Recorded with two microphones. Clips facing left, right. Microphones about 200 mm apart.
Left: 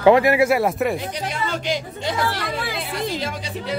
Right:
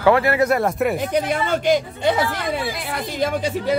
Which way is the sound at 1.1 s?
55° right (ahead or behind).